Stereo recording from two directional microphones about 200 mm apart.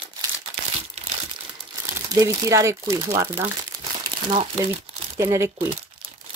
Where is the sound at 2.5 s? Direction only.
15° right (ahead or behind).